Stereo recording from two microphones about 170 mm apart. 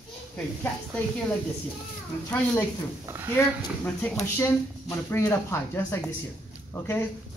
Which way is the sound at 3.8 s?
10° left (ahead or behind).